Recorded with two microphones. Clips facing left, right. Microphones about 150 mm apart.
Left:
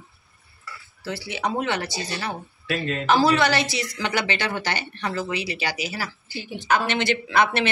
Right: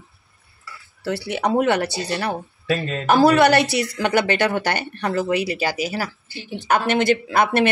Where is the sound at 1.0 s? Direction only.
65° right (ahead or behind).